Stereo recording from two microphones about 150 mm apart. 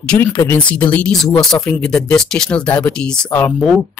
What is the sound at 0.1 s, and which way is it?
Speech, 10° left (ahead or behind).